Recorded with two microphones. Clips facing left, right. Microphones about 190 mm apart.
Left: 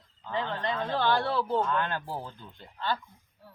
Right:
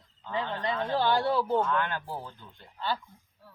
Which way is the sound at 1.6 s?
15° left (ahead or behind).